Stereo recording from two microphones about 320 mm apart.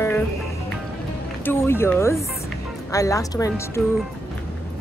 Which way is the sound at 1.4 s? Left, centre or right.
Centre.